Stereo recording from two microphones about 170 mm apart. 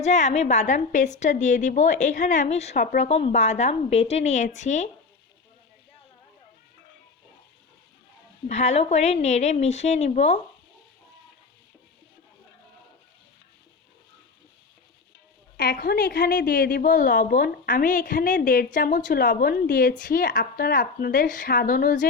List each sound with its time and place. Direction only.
0.0 s a woman's voice: 45° left (ahead or behind)
3.1 s speech: 35° left (ahead or behind)
8.4 s speech: 40° left (ahead or behind)
15.5 s a woman's voice: 65° left (ahead or behind)